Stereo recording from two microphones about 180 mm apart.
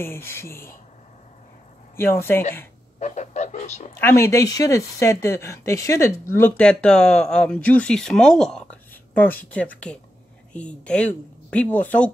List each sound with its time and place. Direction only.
0.0 s speech: 15° left (ahead or behind)
2.0 s speech: 15° left (ahead or behind)
3.0 s speech: 40° left (ahead or behind)
4.0 s speech: 15° left (ahead or behind)